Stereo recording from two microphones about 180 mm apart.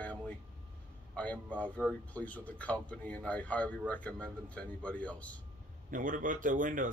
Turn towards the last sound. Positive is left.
turn(degrees=-45)  # may be behind; listen again after turning